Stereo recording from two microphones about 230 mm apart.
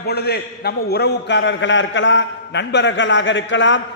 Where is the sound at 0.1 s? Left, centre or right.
Left.